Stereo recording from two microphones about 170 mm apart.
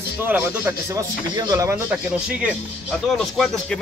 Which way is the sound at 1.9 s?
10° right (ahead or behind).